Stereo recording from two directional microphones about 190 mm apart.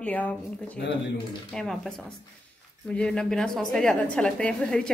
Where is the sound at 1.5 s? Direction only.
5° left (ahead or behind).